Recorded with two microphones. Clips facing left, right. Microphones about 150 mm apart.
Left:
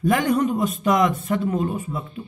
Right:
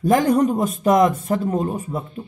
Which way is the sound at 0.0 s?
40° right (ahead or behind).